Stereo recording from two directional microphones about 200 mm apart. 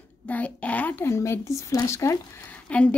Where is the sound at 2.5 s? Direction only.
5° left (ahead or behind).